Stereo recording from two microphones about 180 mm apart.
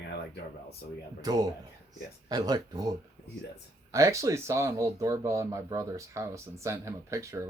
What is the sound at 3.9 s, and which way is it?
Speech, 15° right (ahead or behind).